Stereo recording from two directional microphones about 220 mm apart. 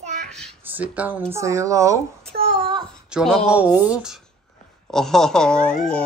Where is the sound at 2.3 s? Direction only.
25° right (ahead or behind).